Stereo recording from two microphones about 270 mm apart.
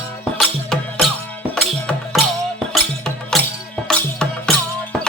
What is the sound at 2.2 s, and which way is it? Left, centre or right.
Music, centre.